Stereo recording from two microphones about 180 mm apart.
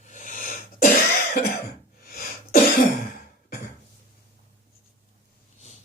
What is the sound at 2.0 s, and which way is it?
Throat clearing, 55° left (ahead or behind).